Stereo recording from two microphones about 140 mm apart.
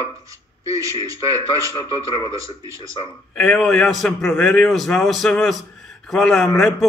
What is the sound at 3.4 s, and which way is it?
A man's voice, 5° left (ahead or behind).